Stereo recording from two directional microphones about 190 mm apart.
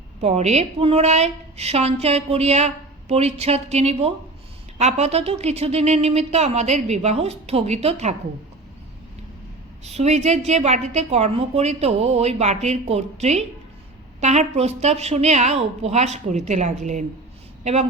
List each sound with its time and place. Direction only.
0.2 s a woman's voice: 35° right (ahead or behind)
9.8 s a woman's voice: 35° right (ahead or behind)